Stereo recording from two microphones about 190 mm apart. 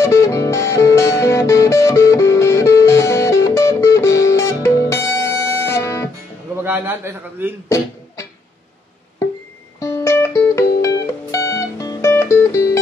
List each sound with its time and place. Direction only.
0.0 s music: 15° left (ahead or behind)
6.6 s a man's voice: 10° right (ahead or behind)
9.8 s music: 15° left (ahead or behind)